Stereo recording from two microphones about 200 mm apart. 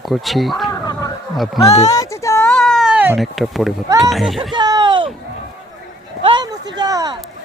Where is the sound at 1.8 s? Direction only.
15° left (ahead or behind); by 3.7 s centre (ahead or behind).